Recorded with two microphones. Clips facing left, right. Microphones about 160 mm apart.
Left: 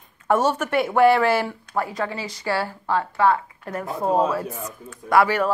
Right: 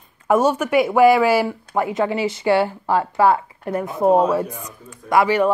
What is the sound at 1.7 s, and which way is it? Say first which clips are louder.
Speech: right 6 dB; 20° right (ahead or behind).